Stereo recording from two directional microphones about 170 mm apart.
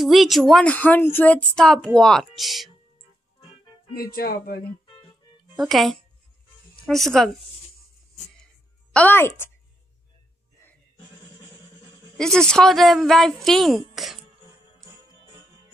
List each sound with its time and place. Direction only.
0.0 s speech: centre (ahead or behind)
3.9 s speech: 60° left (ahead or behind)
5.6 s speech: centre (ahead or behind)
8.9 s a woman's voice: 10° left (ahead or behind)
12.2 s speech: 5° left (ahead or behind)